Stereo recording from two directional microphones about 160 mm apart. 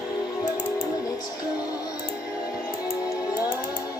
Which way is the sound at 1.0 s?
25° left (ahead or behind).